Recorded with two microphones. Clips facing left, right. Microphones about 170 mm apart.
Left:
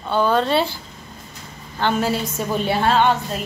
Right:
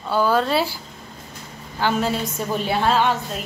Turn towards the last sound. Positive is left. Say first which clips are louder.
# left 2 dB
turn(degrees=0)  # may be behind; listen again after turning